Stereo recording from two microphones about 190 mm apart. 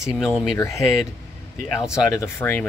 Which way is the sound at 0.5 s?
15° left (ahead or behind).